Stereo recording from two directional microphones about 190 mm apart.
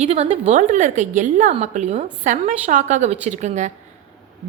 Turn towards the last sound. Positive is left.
turn(degrees=-40)  # may be behind; listen again after turning